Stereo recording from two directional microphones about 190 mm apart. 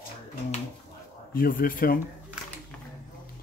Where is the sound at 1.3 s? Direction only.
50° left (ahead or behind).